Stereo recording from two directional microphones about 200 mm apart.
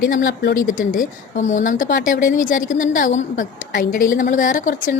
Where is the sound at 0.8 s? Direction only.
40° left (ahead or behind).